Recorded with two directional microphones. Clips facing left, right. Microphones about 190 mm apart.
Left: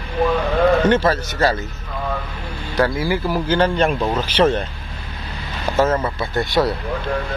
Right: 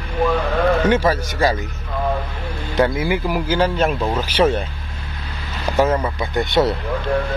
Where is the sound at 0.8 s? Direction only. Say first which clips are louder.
Left 1 dB; 10° right (ahead or behind).